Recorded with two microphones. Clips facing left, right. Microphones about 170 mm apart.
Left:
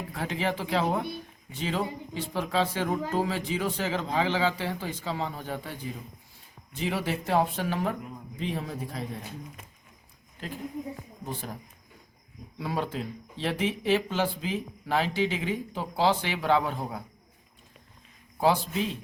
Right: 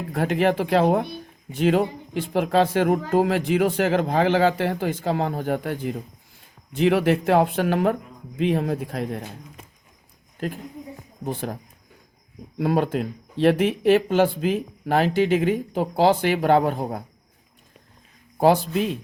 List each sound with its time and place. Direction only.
0.1 s speech: 55° right (ahead or behind)
6.7 s a man's voice: 70° right (ahead or behind)
11.3 s speech: 55° right (ahead or behind)
12.5 s speech: 60° right (ahead or behind)
18.3 s speech: 55° right (ahead or behind)